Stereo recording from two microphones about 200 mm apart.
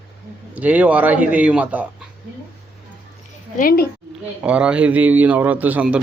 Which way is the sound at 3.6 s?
45° left (ahead or behind).